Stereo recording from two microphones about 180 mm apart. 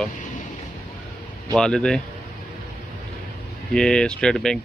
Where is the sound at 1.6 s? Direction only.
5° left (ahead or behind).